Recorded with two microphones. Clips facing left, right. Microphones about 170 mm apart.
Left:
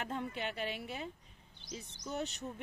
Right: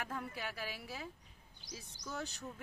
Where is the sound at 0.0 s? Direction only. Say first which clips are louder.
Left 4 dB; 25° left (ahead or behind).